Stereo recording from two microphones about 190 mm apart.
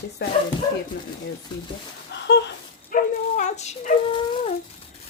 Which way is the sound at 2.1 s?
65° left (ahead or behind).